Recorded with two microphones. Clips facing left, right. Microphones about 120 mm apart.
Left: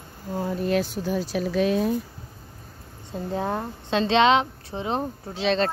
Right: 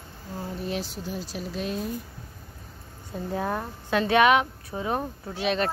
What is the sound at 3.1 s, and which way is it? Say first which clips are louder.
A woman's voice: left 2 dB; 25° left (ahead or behind).